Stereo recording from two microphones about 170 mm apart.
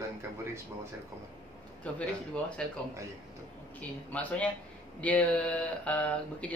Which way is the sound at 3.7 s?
10° left (ahead or behind).